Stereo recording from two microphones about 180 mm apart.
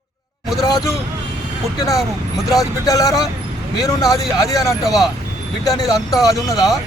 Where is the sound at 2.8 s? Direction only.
20° left (ahead or behind).